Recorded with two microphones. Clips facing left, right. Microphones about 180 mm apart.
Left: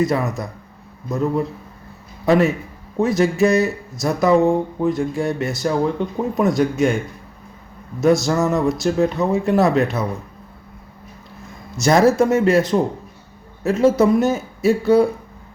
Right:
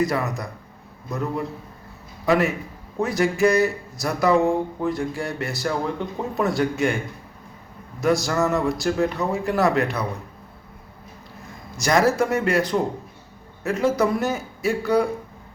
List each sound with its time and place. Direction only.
0.0 s speech: 20° left (ahead or behind)
2.2 s a man's voice: 25° left (ahead or behind)
8.0 s speech: 25° left (ahead or behind)
11.8 s speech: 25° left (ahead or behind)